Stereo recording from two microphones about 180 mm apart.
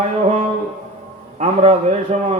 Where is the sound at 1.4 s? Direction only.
40° right (ahead or behind).